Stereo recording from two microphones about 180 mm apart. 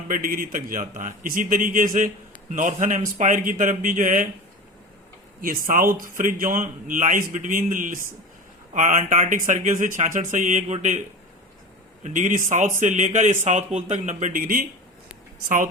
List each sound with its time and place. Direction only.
0.1 s speech: 55° right (ahead or behind)
5.4 s speech: 50° right (ahead or behind)
12.0 s speech: 45° right (ahead or behind)